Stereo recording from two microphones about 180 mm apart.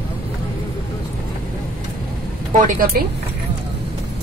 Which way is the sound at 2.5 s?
45° right (ahead or behind).